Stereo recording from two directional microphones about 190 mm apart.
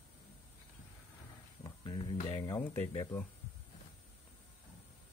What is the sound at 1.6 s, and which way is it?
Speech, 25° left (ahead or behind).